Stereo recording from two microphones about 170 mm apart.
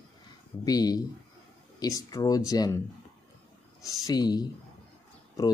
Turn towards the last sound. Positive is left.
turn(degrees=20)  # may be behind; listen again after turning